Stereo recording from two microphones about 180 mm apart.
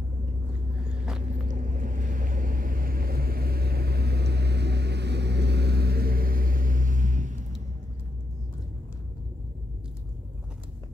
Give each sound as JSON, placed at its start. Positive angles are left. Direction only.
{"t": 1.3, "sound": "boat", "side_deg": -45}